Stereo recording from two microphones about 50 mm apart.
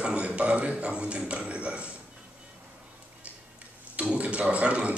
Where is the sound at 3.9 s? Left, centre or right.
Right.